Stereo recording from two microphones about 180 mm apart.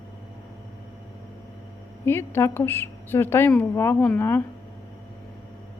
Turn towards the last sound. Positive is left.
turn(degrees=10)  # may be behind; listen again after turning